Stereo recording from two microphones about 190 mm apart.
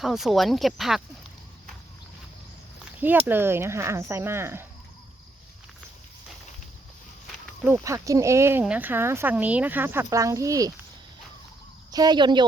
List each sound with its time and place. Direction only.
0.0 s speech: centre (ahead or behind)
3.0 s speech: 10° right (ahead or behind)
7.6 s speech: 15° right (ahead or behind)
11.9 s speech: 20° right (ahead or behind)